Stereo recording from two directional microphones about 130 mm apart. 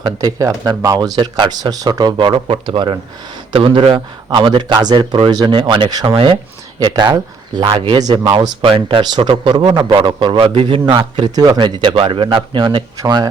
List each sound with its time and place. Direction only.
0.0 s speech: 30° right (ahead or behind)